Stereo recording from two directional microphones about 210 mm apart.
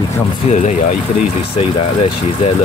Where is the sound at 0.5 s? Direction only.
35° left (ahead or behind).